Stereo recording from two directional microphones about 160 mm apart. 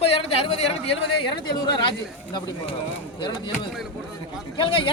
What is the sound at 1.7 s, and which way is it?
Speech, 25° left (ahead or behind).